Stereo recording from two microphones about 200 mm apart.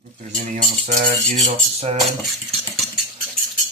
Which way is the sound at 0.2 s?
40° right (ahead or behind).